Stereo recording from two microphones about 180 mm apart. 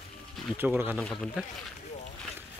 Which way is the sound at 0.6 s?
10° right (ahead or behind).